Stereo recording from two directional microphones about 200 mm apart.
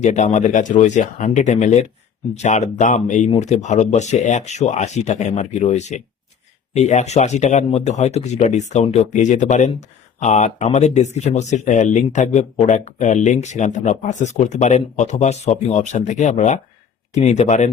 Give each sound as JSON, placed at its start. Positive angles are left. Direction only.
{"t": 0.0, "sound": "speech", "side_deg": 35}